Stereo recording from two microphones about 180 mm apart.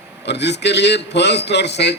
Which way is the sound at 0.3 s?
70° left (ahead or behind).